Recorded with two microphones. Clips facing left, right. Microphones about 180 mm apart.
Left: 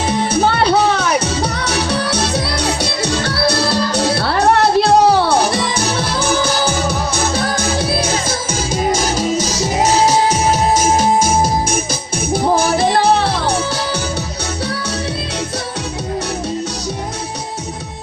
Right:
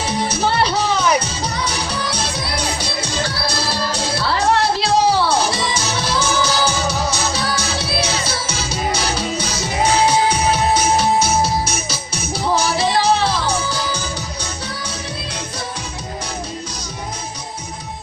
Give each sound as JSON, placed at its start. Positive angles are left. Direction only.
{"t": 0.3, "sound": "music", "side_deg": 60}
{"t": 1.2, "sound": "music", "side_deg": 70}